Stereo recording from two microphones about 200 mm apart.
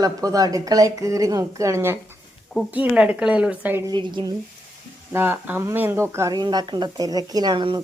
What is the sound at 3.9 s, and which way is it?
Speech, 20° right (ahead or behind).